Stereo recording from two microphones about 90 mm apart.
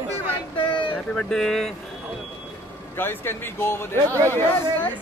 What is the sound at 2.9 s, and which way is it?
Speech, 25° left (ahead or behind).